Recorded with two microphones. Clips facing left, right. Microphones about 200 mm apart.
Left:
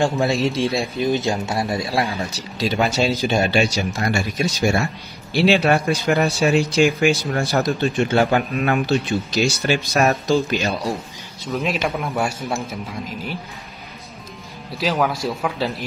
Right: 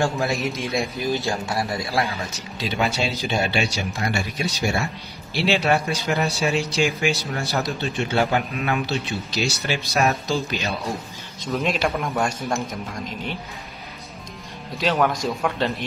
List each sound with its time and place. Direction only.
0.0 s speech: 30° left (ahead or behind)
2.5 s speech: 40° left (ahead or behind)
11.4 s a man's voice: 5° left (ahead or behind)
14.8 s a man's voice: 5° left (ahead or behind)